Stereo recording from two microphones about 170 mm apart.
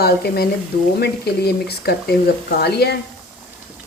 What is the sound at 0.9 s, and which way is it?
Speech, 70° left (ahead or behind).